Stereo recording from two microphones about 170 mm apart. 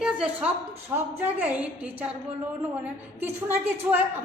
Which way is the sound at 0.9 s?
10° right (ahead or behind).